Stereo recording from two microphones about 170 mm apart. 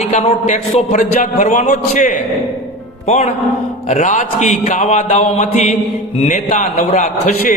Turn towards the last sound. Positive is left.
turn(degrees=45)  # may be behind; listen again after turning